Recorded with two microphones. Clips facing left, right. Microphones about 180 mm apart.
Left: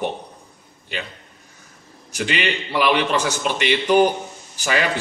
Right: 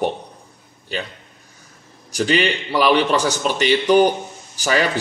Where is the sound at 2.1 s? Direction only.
35° right (ahead or behind).